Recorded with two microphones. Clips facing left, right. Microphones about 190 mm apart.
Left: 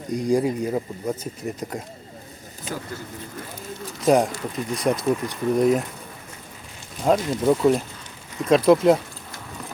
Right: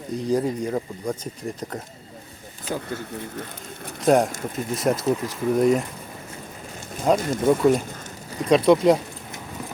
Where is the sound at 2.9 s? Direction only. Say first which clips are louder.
Right 3 dB; 60° right (ahead or behind).